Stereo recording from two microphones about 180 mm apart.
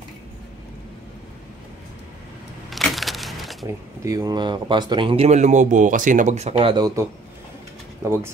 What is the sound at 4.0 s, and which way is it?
Speech, 20° right (ahead or behind).